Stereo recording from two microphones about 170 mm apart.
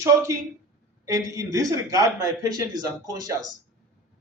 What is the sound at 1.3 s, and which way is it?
Speech, 20° right (ahead or behind).